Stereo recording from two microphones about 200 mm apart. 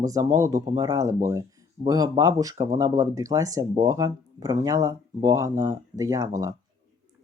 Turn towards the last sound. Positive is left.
turn(degrees=-15)  # may be behind; listen again after turning